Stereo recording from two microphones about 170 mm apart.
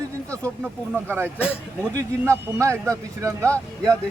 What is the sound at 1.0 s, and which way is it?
A man's voice, 15° right (ahead or behind).